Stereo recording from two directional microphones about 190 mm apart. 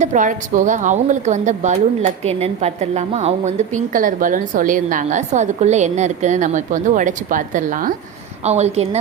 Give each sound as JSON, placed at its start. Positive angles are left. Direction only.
{"t": 0.0, "sound": "speech", "side_deg": -40}
{"t": 3.8, "sound": "a woman's voice", "side_deg": -45}